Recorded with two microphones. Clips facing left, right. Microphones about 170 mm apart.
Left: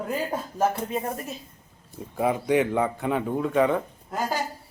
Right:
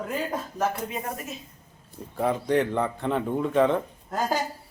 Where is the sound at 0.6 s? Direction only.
30° left (ahead or behind).